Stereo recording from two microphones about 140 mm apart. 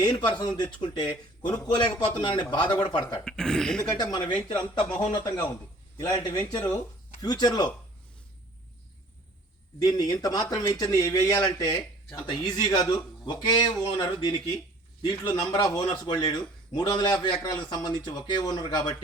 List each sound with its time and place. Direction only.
0.0 s speech: 30° left (ahead or behind)
3.2 s speech: 5° left (ahead or behind)
3.9 s a man's voice: 30° left (ahead or behind)
9.7 s a man's voice: 25° left (ahead or behind)